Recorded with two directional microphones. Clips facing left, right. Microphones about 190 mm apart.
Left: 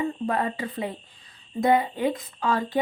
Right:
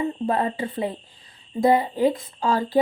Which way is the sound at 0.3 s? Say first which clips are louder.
Right 3 dB; 30° right (ahead or behind).